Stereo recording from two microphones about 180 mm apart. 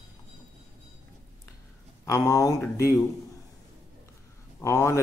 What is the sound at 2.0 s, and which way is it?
Speech, 20° left (ahead or behind).